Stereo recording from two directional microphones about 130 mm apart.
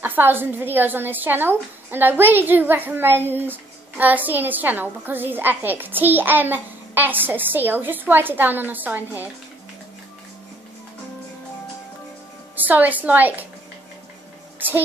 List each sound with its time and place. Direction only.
0.0 s a woman's voice: 15° right (ahead or behind)
12.5 s a woman's voice: 15° right (ahead or behind)